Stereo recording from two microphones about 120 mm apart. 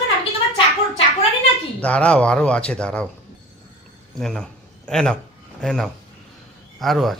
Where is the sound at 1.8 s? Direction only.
10° left (ahead or behind).